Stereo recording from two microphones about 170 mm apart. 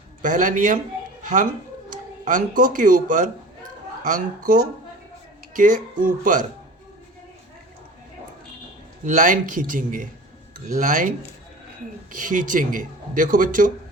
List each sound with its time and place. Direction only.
0.2 s speech: 50° right (ahead or behind)
9.0 s speech: 50° right (ahead or behind)
12.1 s speech: 50° right (ahead or behind)